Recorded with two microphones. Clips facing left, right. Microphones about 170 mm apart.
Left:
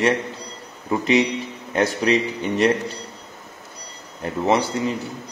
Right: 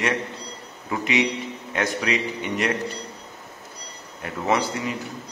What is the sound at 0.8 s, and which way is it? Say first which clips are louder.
A man's voice: left 5 dB; 30° left (ahead or behind).